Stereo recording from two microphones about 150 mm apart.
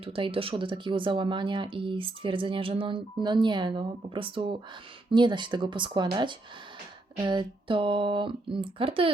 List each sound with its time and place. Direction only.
0.0 s speech: 40° right (ahead or behind)